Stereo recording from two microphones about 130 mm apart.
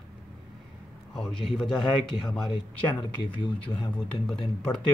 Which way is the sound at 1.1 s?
5° left (ahead or behind).